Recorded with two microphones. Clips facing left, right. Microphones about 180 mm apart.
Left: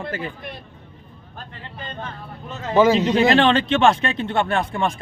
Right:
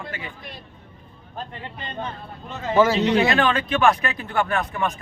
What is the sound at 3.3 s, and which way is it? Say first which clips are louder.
A man's voice: left 5 dB; 30° left (ahead or behind).